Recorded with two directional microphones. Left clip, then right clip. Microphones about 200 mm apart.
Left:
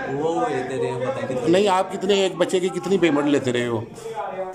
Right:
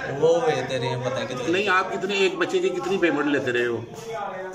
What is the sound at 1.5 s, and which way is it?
A man's voice, 25° left (ahead or behind).